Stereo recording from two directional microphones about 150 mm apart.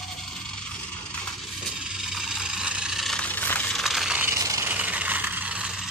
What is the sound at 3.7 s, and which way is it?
Mechanisms, centre (ahead or behind).